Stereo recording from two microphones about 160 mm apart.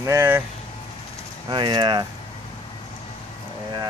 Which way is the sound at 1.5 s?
30° right (ahead or behind).